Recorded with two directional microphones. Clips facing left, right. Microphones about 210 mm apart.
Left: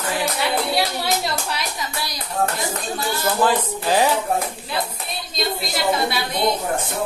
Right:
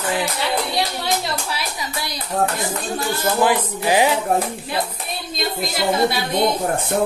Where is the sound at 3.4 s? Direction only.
15° right (ahead or behind).